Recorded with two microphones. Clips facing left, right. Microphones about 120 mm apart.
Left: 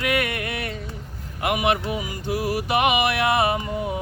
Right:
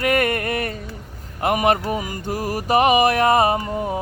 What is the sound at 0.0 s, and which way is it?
Music, 45° right (ahead or behind).